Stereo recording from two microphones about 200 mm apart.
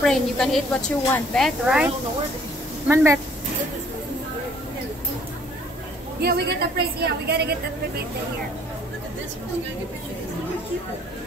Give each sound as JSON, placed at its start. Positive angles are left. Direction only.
{"t": 0.0, "sound": "a woman's voice", "side_deg": 0}
{"t": 2.9, "sound": "speech", "side_deg": -10}
{"t": 6.2, "sound": "a woman's voice", "side_deg": -55}